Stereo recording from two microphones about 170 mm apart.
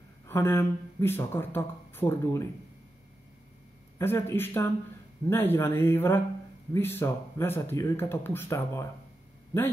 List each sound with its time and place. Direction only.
0.3 s speech: 15° left (ahead or behind)
4.0 s speech: 15° left (ahead or behind)